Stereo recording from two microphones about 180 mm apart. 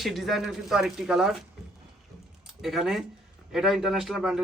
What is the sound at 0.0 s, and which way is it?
A man's voice, centre (ahead or behind).